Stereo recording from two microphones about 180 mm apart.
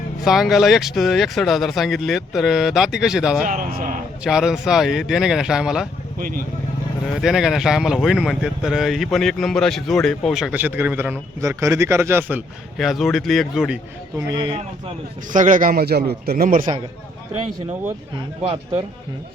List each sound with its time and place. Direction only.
0.3 s speech: centre (ahead or behind)
3.4 s a man's voice: 50° right (ahead or behind)
4.2 s speech: 5° right (ahead or behind)
6.1 s a man's voice: 55° right (ahead or behind)
7.1 s speech: centre (ahead or behind)
12.7 s speech: centre (ahead or behind)
15.3 s a man's voice: 45° right (ahead or behind)